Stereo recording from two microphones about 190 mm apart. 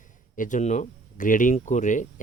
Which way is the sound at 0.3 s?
40° left (ahead or behind).